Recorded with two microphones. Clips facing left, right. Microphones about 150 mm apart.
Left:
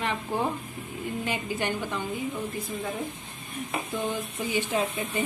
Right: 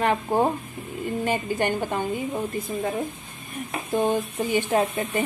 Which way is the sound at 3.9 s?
50° right (ahead or behind).